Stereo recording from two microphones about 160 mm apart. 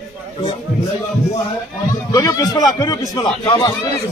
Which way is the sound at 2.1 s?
25° left (ahead or behind).